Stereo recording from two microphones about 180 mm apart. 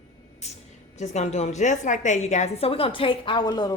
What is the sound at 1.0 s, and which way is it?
A woman's voice, 40° left (ahead or behind).